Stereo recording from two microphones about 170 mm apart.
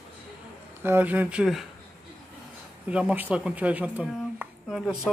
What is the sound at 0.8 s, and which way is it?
Speech, 10° right (ahead or behind).